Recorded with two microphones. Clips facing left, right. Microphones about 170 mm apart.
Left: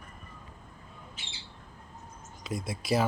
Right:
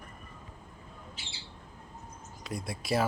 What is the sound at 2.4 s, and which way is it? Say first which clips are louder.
Speech: left 3 dB; centre (ahead or behind).